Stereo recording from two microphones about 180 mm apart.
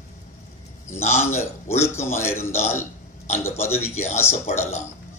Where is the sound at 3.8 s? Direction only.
35° left (ahead or behind).